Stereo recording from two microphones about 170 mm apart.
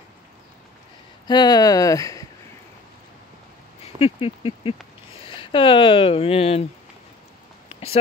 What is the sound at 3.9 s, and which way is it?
Speech, 35° left (ahead or behind).